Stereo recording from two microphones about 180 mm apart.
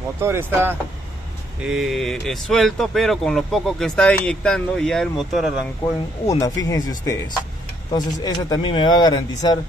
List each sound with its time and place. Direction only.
0.2 s speech: 15° right (ahead or behind)
6.2 s speech: 20° left (ahead or behind)